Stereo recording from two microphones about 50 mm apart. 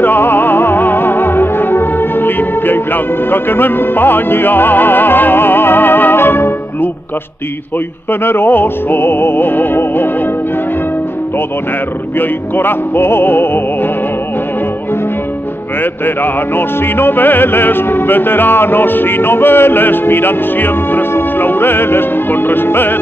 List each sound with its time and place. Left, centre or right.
0.0 s music: left
8.1 s music: left
12.2 s music: left
15.8 s music: left